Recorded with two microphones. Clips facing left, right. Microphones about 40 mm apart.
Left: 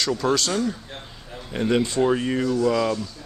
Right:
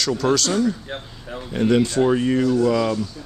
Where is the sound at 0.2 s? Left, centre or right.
Left.